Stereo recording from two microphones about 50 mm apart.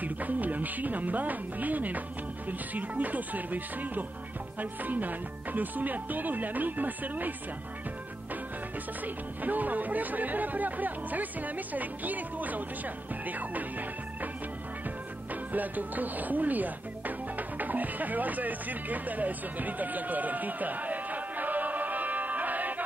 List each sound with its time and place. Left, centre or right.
0.0 s speech: right
9.0 s speech: right
15.5 s speech: right